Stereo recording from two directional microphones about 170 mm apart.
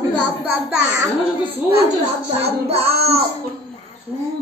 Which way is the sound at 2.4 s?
35° right (ahead or behind).